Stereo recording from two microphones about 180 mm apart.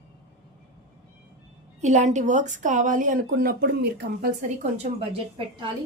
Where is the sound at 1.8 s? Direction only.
40° right (ahead or behind).